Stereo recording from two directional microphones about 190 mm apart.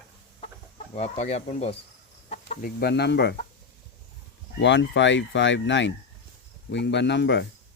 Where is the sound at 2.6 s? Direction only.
55° left (ahead or behind).